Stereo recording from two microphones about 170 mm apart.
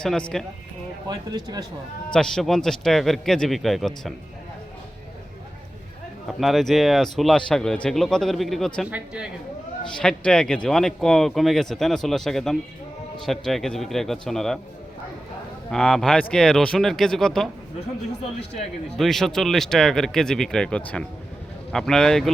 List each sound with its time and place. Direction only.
0.0 s speech: 5° left (ahead or behind)
1.0 s speech: 25° right (ahead or behind)
2.1 s speech: 5° left (ahead or behind)
6.2 s speech: centre (ahead or behind)
10.0 s speech: 5° left (ahead or behind)
15.7 s speech: 5° left (ahead or behind)
18.9 s speech: centre (ahead or behind)